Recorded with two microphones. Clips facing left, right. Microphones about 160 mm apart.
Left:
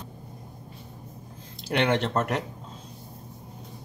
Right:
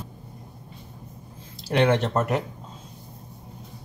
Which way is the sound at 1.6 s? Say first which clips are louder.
Right 3 dB; centre (ahead or behind).